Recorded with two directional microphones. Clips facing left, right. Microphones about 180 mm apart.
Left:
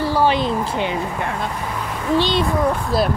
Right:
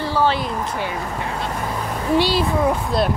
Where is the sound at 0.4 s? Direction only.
20° left (ahead or behind).